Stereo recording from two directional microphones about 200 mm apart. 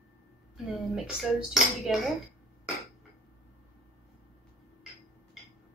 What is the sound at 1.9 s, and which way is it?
Speech, centre (ahead or behind).